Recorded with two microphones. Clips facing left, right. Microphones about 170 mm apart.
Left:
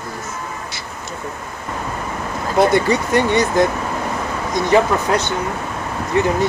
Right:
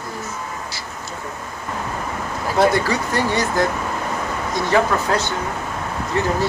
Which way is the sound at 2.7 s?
20° left (ahead or behind).